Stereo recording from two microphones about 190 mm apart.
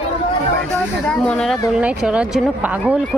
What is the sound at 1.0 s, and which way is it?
Speech, 5° left (ahead or behind).